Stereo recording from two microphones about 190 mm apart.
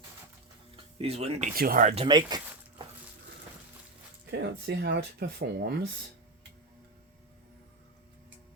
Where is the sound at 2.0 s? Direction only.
20° right (ahead or behind).